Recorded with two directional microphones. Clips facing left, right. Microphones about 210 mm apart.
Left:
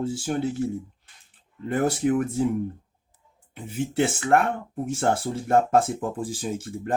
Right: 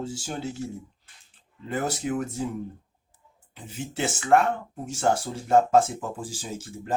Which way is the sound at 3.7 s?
55° left (ahead or behind).